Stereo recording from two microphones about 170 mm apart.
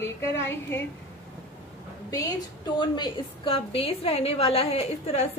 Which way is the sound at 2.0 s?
20° left (ahead or behind).